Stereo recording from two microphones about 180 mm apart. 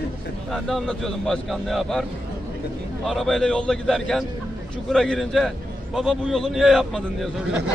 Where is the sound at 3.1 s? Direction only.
Centre (ahead or behind).